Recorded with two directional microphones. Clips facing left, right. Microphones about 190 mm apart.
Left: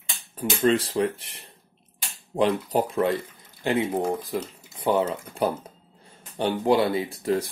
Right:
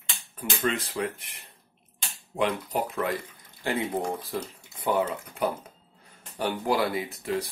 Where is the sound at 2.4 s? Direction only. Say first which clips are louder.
Left 5 dB; 30° left (ahead or behind).